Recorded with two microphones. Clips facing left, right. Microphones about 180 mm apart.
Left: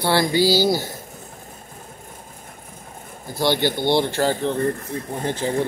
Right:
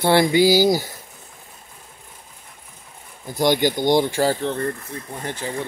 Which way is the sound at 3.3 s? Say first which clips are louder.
Right 2 dB; 15° right (ahead or behind).